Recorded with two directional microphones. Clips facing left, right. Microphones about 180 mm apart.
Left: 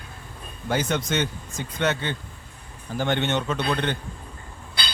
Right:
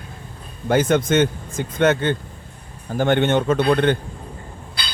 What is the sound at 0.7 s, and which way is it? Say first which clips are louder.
Speech: right 8 dB; 55° right (ahead or behind).